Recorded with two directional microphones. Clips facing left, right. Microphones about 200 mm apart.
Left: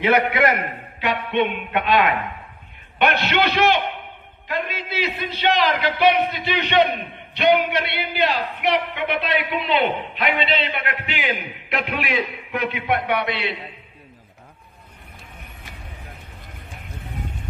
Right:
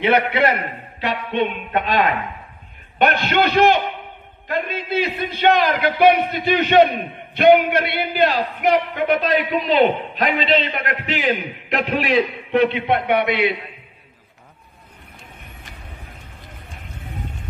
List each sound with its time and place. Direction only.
0.0 s a man's voice: 30° right (ahead or behind)
3.2 s a man's voice: 50° right (ahead or behind); by 13.6 s 20° right (ahead or behind)